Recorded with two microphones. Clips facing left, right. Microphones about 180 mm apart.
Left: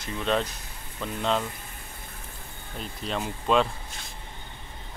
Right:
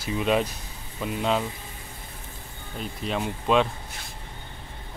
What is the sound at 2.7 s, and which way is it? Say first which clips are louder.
Speech: right 3 dB; centre (ahead or behind).